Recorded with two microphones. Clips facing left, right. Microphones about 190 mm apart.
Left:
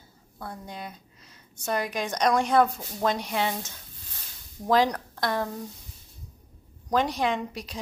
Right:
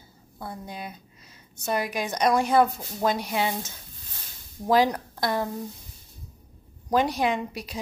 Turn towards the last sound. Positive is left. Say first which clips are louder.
# right 1 dB
turn(degrees=-5)  # may be behind; listen again after turning